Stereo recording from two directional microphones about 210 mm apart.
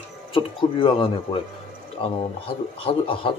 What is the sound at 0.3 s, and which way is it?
Speech, 25° left (ahead or behind).